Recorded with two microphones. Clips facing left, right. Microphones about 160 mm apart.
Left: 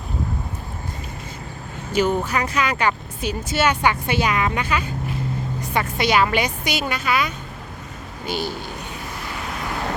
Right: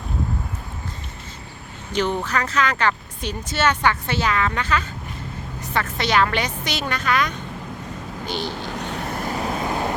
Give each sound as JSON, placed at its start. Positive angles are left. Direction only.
{"t": 1.9, "sound": "speech", "side_deg": 10}
{"t": 8.9, "sound": "vehicle", "side_deg": -55}